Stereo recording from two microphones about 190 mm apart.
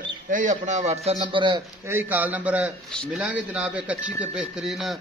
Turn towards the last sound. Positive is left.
turn(degrees=0)  # may be behind; listen again after turning